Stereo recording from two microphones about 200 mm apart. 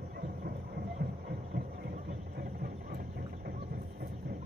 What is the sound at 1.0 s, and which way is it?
Music, 55° right (ahead or behind).